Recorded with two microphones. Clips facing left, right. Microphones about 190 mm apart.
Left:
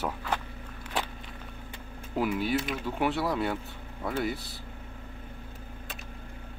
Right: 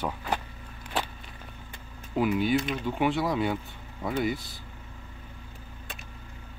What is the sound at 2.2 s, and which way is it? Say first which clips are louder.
Speech: right 3 dB; centre (ahead or behind).